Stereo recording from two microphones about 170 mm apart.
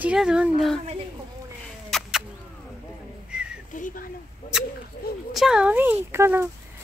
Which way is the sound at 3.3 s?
5° right (ahead or behind).